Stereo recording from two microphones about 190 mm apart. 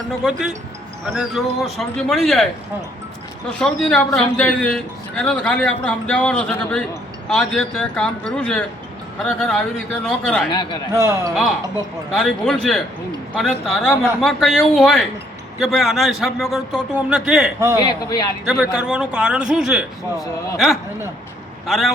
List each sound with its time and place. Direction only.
0.2 s speech: 5° right (ahead or behind)
10.5 s speech: 25° left (ahead or behind)
10.9 s speech: 15° right (ahead or behind)
12.1 s speech: 5° left (ahead or behind)
17.8 s speech: 20° left (ahead or behind)
18.4 s speech: 5° right (ahead or behind)
21.7 s speech: centre (ahead or behind)